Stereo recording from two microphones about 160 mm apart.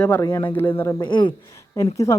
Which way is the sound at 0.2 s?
25° left (ahead or behind).